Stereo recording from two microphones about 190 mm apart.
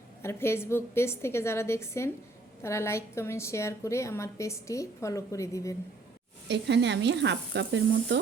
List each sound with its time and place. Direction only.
0.2 s a woman's voice: 15° left (ahead or behind)
6.5 s speech: 65° right (ahead or behind)